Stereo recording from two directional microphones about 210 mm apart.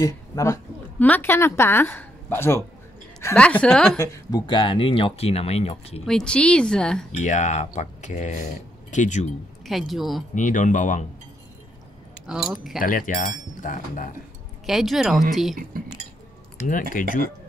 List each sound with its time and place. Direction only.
0.0 s a woman's voice: 15° left (ahead or behind)
6.0 s speech: 5° left (ahead or behind)
7.1 s speech: 35° left (ahead or behind)
9.7 s speech: centre (ahead or behind)
10.3 s speech: 35° left (ahead or behind)
12.3 s speech: 5° right (ahead or behind)
12.8 s speech: 40° left (ahead or behind)
14.7 s speech: centre (ahead or behind)
17.0 s speech: 40° left (ahead or behind)